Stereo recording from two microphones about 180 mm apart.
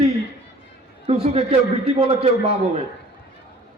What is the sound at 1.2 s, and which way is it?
Speech, 35° right (ahead or behind).